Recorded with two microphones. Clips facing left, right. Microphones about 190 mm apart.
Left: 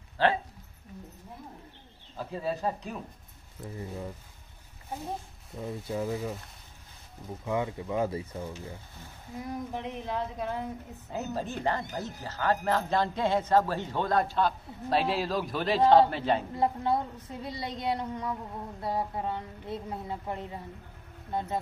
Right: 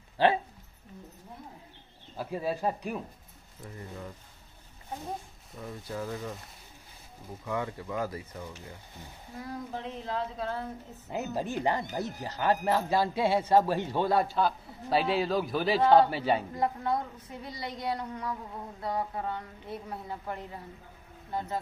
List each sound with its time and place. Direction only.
0.2 s speech: 15° right (ahead or behind)
2.1 s speech: 10° right (ahead or behind)
3.6 s a woman's voice: 20° left (ahead or behind)
5.6 s a woman's voice: 25° left (ahead or behind)
7.4 s a woman's voice: 20° left (ahead or behind)
9.4 s speech: 15° left (ahead or behind)
11.1 s a woman's voice: 15° right (ahead or behind)
16.5 s a woman's voice: 25° left (ahead or behind)